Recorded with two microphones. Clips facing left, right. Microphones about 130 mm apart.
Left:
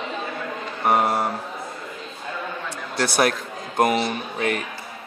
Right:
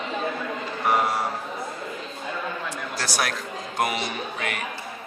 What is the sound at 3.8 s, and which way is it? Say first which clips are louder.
Speech: left 6 dB; 45° left (ahead or behind).